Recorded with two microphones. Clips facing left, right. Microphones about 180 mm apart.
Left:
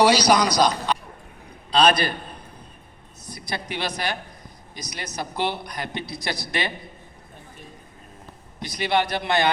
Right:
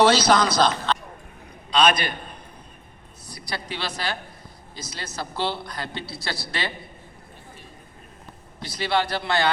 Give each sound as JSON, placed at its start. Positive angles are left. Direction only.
{"t": 0.0, "sound": "a man's voice", "side_deg": 15}
{"t": 0.9, "sound": "a sound", "side_deg": 15}
{"t": 1.7, "sound": "a man's voice", "side_deg": 35}
{"t": 3.2, "sound": "a man's voice", "side_deg": 20}
{"t": 8.5, "sound": "a man's voice", "side_deg": 20}